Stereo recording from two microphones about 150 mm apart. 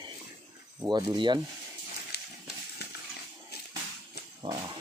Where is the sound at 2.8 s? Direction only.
90° left.